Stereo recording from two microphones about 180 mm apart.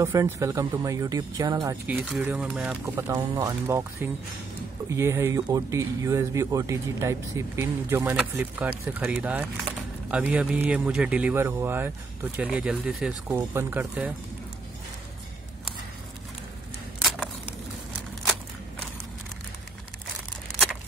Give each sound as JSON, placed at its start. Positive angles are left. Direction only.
{"t": 0.0, "sound": "speech", "side_deg": -20}
{"t": 1.9, "sound": "speech", "side_deg": 0}